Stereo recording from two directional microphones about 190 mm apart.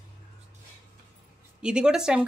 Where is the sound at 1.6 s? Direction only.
5° right (ahead or behind).